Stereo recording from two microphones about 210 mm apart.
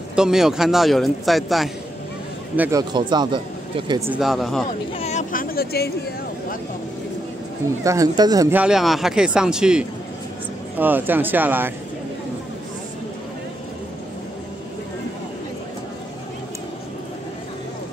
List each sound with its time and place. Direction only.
0.1 s speech: 5° right (ahead or behind)
2.8 s speech: 20° right (ahead or behind)
4.1 s speech: centre (ahead or behind)
4.9 s a sound: 30° left (ahead or behind); by 5.9 s 50° left (ahead or behind)
7.8 s speech: 15° right (ahead or behind)